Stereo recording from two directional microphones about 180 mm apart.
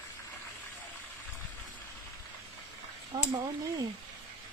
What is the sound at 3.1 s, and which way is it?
Speech, 20° right (ahead or behind).